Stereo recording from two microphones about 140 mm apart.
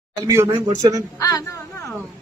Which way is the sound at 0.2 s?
20° right (ahead or behind).